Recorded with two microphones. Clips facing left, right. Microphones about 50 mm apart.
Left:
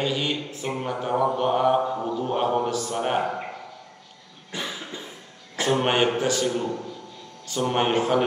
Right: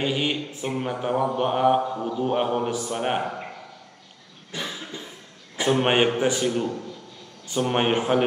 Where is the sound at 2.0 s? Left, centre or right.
Centre.